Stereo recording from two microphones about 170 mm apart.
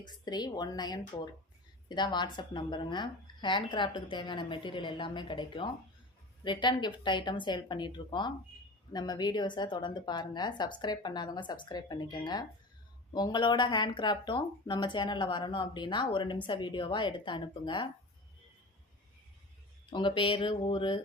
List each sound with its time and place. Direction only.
0.0 s speech: 25° left (ahead or behind)
19.9 s speech: 30° left (ahead or behind)